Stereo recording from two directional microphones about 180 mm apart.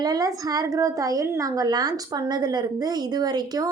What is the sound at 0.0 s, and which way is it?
A woman's voice, 20° right (ahead or behind).